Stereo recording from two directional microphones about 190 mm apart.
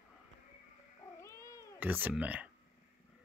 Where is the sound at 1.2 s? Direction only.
15° left (ahead or behind).